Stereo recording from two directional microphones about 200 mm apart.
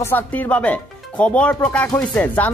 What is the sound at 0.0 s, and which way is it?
Speech, 10° left (ahead or behind).